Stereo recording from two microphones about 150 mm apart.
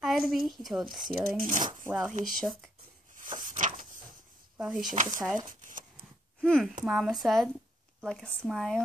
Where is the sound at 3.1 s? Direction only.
60° right (ahead or behind).